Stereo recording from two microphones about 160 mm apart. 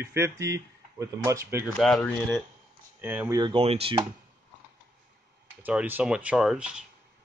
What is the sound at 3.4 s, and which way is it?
Speech, 35° right (ahead or behind).